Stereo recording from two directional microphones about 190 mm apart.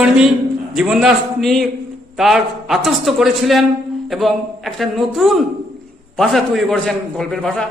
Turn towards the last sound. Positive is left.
turn(degrees=5)  # may be behind; listen again after turning